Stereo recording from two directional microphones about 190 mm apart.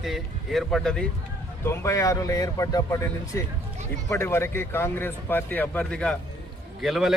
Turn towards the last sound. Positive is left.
turn(degrees=0)  # may be behind; listen again after turning